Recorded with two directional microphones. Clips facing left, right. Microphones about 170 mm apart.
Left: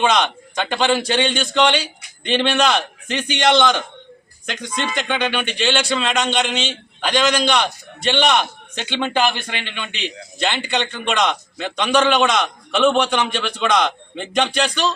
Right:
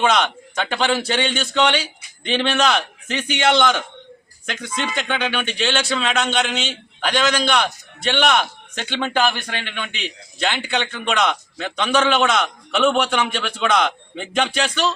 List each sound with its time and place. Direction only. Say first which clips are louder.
0.0 s a man's voice: left 1 dB; 5° right (ahead or behind)
9.0 s speech: left 1 dB; 15° left (ahead or behind)
9.6 s a man's voice: left 1 dB; 5° right (ahead or behind)